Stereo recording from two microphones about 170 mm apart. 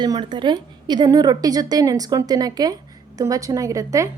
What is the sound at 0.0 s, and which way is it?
A woman's voice, 25° right (ahead or behind).